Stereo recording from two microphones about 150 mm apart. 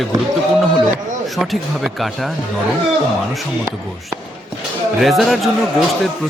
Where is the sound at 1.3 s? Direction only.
Centre (ahead or behind).